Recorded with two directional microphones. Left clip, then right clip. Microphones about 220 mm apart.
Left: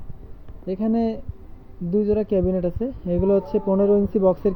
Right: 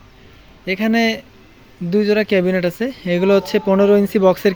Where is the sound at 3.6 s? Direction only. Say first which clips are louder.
Right 6 dB; 50° right (ahead or behind).